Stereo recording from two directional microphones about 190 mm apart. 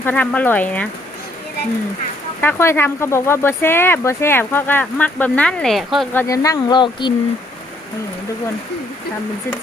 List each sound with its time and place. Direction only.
0.0 s speech: 10° left (ahead or behind)
2.4 s speech: 10° left (ahead or behind)
6.2 s speech: 15° left (ahead or behind)